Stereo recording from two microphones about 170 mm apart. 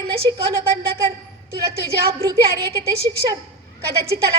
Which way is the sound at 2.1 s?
15° right (ahead or behind).